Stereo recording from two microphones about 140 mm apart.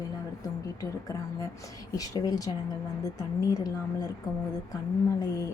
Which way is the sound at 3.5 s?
25° left (ahead or behind).